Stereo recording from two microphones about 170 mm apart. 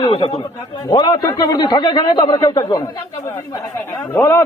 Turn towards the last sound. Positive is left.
turn(degrees=15)  # may be behind; listen again after turning